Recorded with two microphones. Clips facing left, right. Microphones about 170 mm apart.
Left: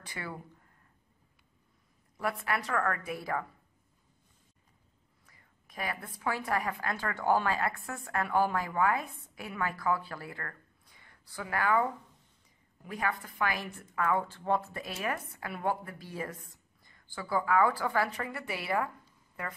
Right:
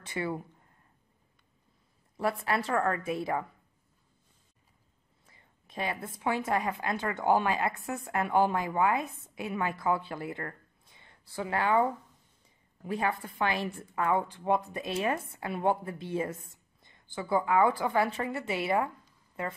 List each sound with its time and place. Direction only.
0.0 s a woman's voice: 25° right (ahead or behind)
2.1 s a woman's voice: 30° right (ahead or behind)
5.2 s a woman's voice: 25° right (ahead or behind)